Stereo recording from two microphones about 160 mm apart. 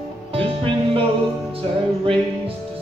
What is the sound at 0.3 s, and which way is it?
Music, 35° right (ahead or behind).